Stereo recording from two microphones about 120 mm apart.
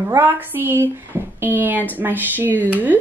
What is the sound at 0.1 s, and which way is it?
Speech, 20° right (ahead or behind).